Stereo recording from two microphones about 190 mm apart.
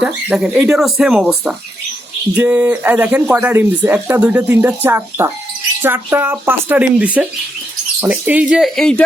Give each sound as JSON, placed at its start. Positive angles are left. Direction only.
{"t": 0.0, "sound": "speech", "side_deg": -5}